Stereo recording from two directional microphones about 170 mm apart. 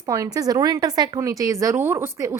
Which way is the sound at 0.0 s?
20° right (ahead or behind).